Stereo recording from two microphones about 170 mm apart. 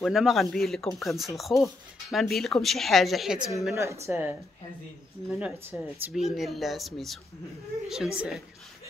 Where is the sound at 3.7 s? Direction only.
15° right (ahead or behind).